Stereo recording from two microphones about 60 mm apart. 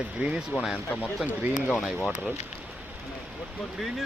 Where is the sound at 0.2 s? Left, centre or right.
Centre.